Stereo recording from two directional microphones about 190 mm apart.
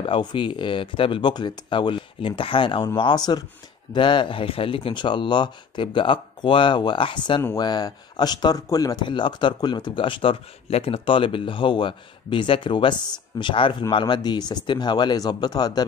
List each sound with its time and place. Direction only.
0.0 s speech: 25° left (ahead or behind)